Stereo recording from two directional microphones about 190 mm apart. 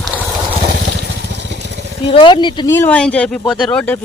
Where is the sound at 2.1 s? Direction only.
25° left (ahead or behind).